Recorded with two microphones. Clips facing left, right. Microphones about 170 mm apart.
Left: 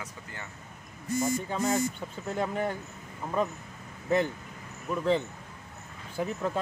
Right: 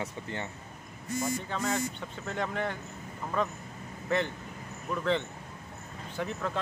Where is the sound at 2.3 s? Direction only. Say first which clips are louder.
Left 3 dB; 10° left (ahead or behind).